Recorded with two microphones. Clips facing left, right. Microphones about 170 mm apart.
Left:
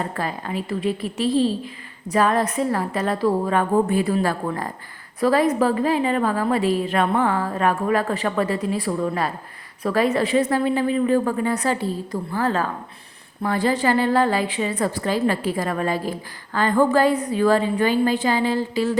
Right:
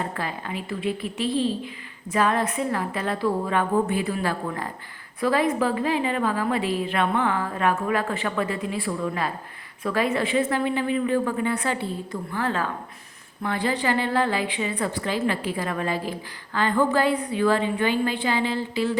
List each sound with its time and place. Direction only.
0.2 s a woman's voice: 40° left (ahead or behind)